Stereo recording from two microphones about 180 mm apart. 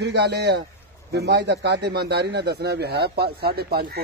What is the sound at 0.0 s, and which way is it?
A man's voice, 70° right (ahead or behind).